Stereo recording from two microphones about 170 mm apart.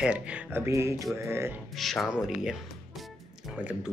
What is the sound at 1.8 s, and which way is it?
Speech, centre (ahead or behind).